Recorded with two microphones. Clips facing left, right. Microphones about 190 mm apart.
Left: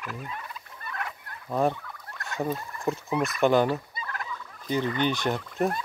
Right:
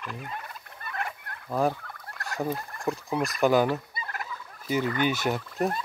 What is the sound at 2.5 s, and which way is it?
Speech, 55° right (ahead or behind).